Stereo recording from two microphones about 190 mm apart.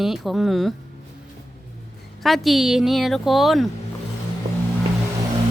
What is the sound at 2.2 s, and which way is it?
A woman's voice, centre (ahead or behind).